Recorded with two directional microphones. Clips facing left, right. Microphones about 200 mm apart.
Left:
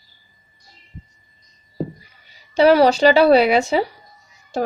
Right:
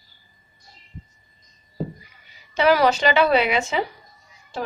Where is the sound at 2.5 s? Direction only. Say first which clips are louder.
Left 5 dB; 30° left (ahead or behind).